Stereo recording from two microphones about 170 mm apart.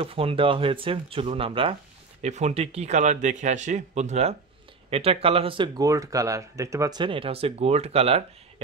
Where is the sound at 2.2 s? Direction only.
45° right (ahead or behind).